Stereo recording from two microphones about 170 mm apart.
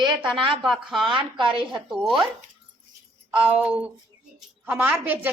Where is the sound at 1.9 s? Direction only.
Centre (ahead or behind).